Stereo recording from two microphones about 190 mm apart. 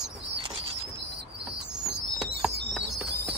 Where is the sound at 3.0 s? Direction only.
60° right (ahead or behind).